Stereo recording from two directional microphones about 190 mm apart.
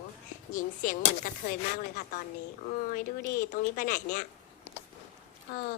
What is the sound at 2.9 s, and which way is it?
Speech, 50° left (ahead or behind).